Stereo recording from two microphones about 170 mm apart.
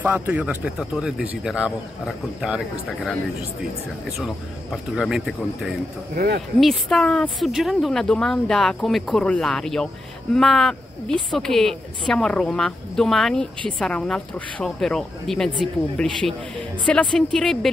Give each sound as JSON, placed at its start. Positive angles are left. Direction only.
{"t": 0.0, "sound": "a woman's voice", "side_deg": -10}
{"t": 4.9, "sound": "a woman's voice", "side_deg": -5}
{"t": 6.1, "sound": "speech", "side_deg": -70}
{"t": 6.6, "sound": "a woman's voice", "side_deg": 0}